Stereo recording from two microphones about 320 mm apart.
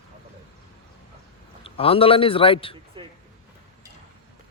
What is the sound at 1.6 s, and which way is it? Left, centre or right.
A man's voice, centre.